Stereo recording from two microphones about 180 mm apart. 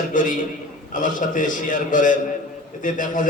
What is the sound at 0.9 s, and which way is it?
A man's voice, 45° left (ahead or behind).